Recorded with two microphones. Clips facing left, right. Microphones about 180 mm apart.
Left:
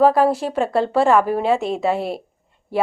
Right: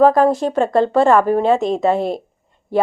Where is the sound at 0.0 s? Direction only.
5° left (ahead or behind).